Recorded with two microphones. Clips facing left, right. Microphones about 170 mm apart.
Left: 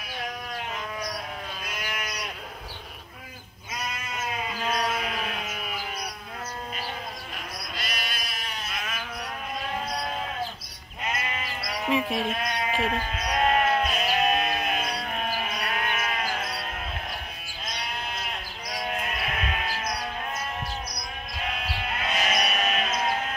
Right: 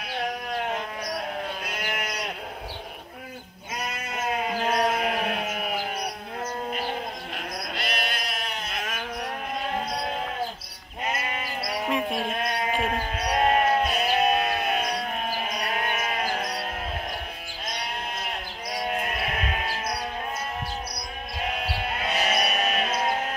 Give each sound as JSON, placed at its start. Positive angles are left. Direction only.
{"t": 0.2, "sound": "sheep", "side_deg": -60}
{"t": 3.7, "sound": "sheep", "side_deg": -60}
{"t": 4.7, "sound": "a sound", "side_deg": -55}
{"t": 7.3, "sound": "sheep", "side_deg": -60}
{"t": 11.1, "sound": "sheep", "side_deg": -30}
{"t": 11.9, "sound": "speech", "side_deg": 0}
{"t": 12.3, "sound": "sheep", "side_deg": -45}
{"t": 15.4, "sound": "sheep", "side_deg": -35}
{"t": 19.3, "sound": "sheep", "side_deg": -30}
{"t": 21.6, "sound": "sheep", "side_deg": -30}